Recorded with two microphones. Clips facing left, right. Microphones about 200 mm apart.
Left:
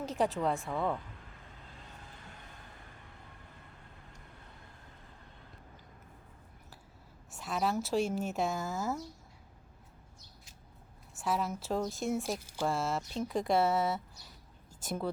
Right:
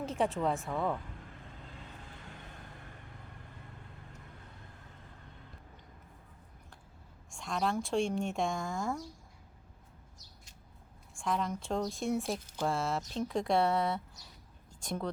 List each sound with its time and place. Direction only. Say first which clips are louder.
0.0 s speech: even; centre (ahead or behind)
7.3 s speech: even; 5° left (ahead or behind)
11.1 s speech: even; 5° left (ahead or behind)
14.7 s a sound: left 1 dB; 5° left (ahead or behind)